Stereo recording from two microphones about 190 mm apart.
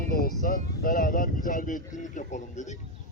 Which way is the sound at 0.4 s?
45° left (ahead or behind).